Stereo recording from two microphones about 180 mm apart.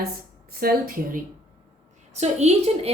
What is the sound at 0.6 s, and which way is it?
Speech, 55° right (ahead or behind).